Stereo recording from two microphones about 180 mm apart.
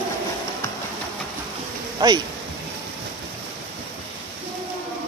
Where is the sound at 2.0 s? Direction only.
25° right (ahead or behind).